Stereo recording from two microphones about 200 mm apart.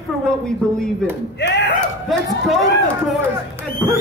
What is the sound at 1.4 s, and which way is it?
Speech, 60° left (ahead or behind).